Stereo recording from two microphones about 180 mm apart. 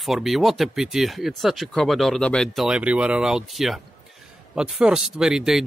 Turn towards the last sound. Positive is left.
turn(degrees=0)  # may be behind; listen again after turning